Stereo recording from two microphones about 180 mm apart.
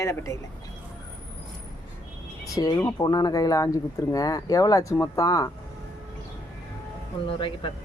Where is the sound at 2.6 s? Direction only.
20° left (ahead or behind).